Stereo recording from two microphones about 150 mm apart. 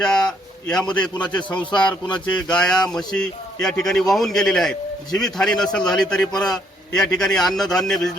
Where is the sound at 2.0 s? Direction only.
30° left (ahead or behind).